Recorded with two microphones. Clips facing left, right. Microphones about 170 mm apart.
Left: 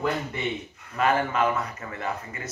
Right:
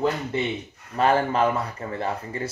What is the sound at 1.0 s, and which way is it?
Speech, 30° right (ahead or behind).